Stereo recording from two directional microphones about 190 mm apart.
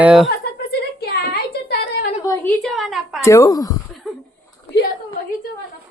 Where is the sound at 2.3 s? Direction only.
15° left (ahead or behind).